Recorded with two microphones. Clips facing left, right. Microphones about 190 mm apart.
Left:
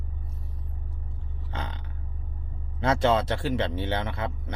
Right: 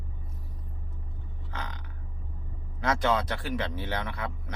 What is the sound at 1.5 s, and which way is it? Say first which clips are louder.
Burping: left 3 dB; 30° left (ahead or behind).